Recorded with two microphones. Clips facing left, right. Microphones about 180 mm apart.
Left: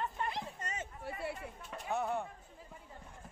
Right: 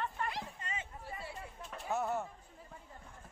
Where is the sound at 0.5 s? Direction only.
45° left (ahead or behind).